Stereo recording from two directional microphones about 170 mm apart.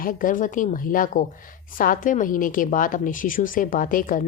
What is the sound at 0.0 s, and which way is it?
A woman's voice, 55° left (ahead or behind).